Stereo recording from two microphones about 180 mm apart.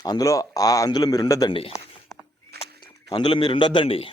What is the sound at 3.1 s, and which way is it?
Speech, 25° left (ahead or behind).